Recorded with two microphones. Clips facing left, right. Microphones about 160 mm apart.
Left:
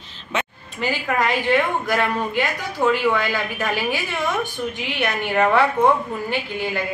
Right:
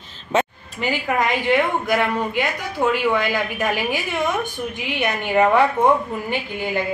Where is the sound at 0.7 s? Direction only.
15° right (ahead or behind).